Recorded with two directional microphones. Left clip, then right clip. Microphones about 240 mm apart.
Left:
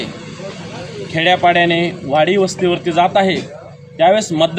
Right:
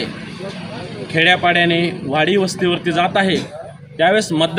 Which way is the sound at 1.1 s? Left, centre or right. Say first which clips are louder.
Left 1 dB; centre.